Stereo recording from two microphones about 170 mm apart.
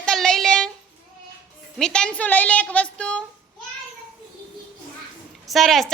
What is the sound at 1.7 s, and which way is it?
A woman's voice, 5° left (ahead or behind).